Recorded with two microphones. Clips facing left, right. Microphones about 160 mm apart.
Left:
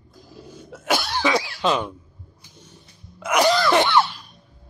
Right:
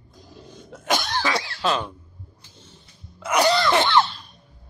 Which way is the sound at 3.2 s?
10° left (ahead or behind).